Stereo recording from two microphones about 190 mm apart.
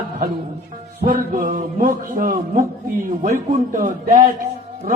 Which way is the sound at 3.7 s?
45° right (ahead or behind).